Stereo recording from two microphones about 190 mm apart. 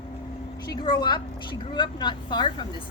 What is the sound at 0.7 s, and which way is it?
A woman's voice, 20° left (ahead or behind).